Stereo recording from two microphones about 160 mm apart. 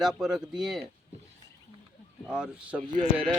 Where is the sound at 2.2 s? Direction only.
5° right (ahead or behind).